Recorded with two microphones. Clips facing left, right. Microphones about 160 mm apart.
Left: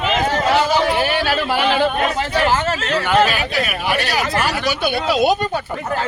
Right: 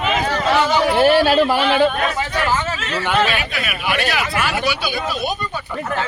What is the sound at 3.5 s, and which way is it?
Speech, 40° left (ahead or behind).